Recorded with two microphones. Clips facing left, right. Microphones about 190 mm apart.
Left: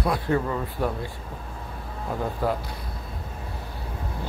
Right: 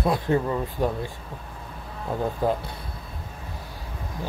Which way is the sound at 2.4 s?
20° right (ahead or behind).